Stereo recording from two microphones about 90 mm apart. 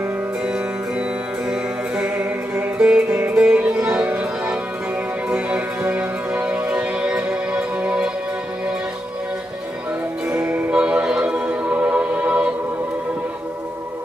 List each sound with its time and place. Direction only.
0.0 s music: 10° right (ahead or behind)
2.0 s music: 20° right (ahead or behind)
10.2 s music: 10° right (ahead or behind)